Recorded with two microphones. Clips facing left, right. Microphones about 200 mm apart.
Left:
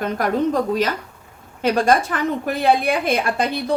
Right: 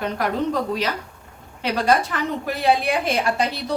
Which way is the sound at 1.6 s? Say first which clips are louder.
Left 3 dB; 50° left (ahead or behind).